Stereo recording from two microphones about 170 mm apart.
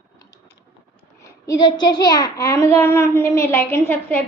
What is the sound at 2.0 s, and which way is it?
A child's voice, 20° left (ahead or behind).